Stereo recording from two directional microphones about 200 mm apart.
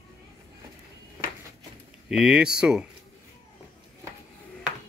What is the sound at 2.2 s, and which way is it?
Speech, 5° right (ahead or behind).